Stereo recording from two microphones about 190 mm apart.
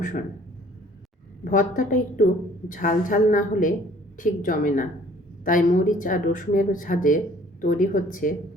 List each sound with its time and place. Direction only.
1.5 s speech: 45° left (ahead or behind)